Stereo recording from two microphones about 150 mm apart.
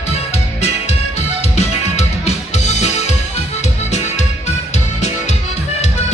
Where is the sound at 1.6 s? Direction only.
45° left (ahead or behind).